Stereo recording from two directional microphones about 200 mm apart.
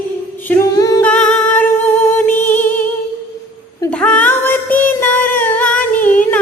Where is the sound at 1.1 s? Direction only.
5° left (ahead or behind).